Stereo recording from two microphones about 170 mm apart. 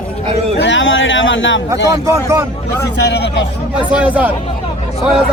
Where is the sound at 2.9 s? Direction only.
80° left.